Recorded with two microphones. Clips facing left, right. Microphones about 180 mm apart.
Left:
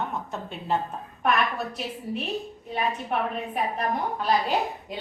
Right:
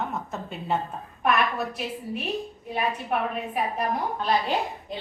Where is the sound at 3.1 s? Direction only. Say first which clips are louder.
Right 1 dB; 5° right (ahead or behind).